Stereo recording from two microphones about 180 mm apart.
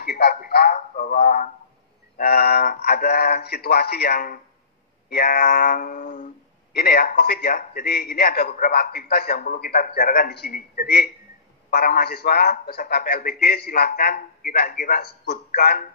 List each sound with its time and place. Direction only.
0.0 s a man's voice: 60° left (ahead or behind)